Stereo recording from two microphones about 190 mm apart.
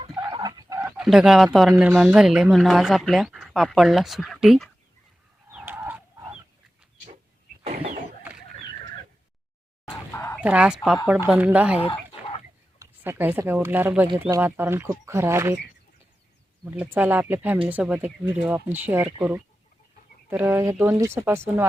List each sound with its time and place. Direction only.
0.2 s a sound: 20° right (ahead or behind)
0.8 s bird: 5° right (ahead or behind)
1.7 s speech: 10° right (ahead or behind)
5.5 s chicken: 10° right (ahead or behind)
7.6 s a sound: 35° right (ahead or behind)
8.2 s a sound: 5° right (ahead or behind)
10.3 s speech: 5° right (ahead or behind)
11.8 s chicken: 30° left (ahead or behind)
12.8 s speech: 10° right (ahead or behind)
16.7 s speech: 10° right (ahead or behind)
20.3 s speech: 10° right (ahead or behind)